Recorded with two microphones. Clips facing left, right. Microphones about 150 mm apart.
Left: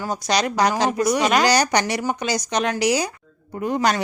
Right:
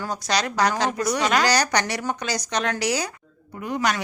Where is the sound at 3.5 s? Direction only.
30° left (ahead or behind).